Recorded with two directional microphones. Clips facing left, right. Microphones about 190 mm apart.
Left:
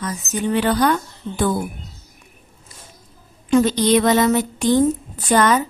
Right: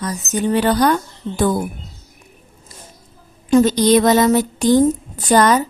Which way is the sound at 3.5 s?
40° right (ahead or behind).